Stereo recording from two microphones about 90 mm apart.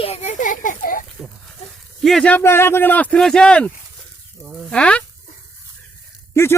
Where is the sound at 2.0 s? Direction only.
5° left (ahead or behind).